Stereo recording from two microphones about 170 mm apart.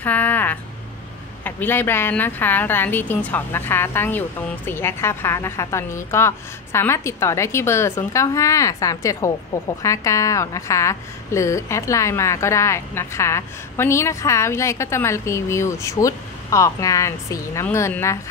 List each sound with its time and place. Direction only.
0.0 s a woman's voice: 10° left (ahead or behind)